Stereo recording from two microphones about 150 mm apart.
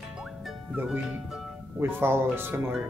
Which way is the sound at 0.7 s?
10° right (ahead or behind).